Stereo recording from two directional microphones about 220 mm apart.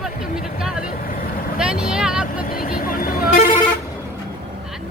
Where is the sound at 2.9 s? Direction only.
40° left (ahead or behind).